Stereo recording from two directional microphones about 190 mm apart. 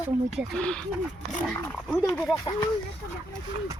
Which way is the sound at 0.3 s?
Centre (ahead or behind).